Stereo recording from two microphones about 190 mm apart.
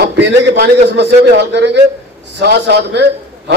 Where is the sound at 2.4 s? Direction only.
65° right (ahead or behind).